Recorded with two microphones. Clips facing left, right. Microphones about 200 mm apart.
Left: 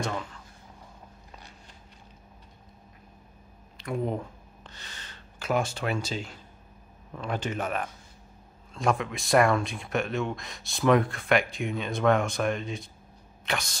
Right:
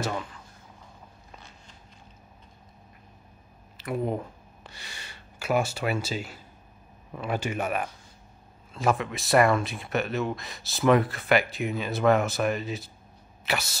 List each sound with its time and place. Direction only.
0.0 s speech: 5° right (ahead or behind)
3.7 s a sound: 5° right (ahead or behind)
7.1 s speech: 10° right (ahead or behind)